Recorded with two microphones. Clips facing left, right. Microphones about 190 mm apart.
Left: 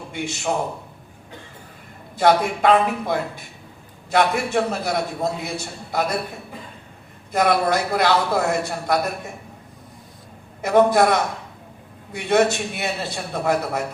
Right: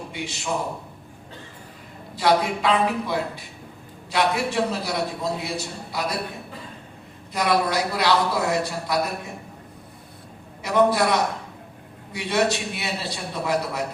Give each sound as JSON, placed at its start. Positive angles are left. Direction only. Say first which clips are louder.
{"t": 2.1, "sound": "a man's voice", "louder": "left 3 dB", "side_deg": 50}
{"t": 7.3, "sound": "a man's voice", "louder": "left 3 dB", "side_deg": 50}
{"t": 10.6, "sound": "a man's voice", "louder": "left 4 dB", "side_deg": 50}